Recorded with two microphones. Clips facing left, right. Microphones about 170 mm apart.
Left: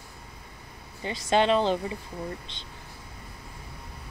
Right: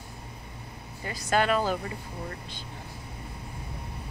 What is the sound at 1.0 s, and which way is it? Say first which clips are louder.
Speech: left 3 dB; 25° left (ahead or behind).